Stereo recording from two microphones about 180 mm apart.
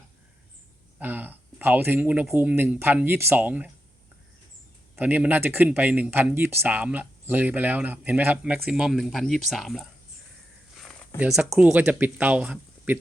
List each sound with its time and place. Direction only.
0.9 s speech: 10° right (ahead or behind)
4.9 s speech: 10° right (ahead or behind)
11.2 s speech: centre (ahead or behind)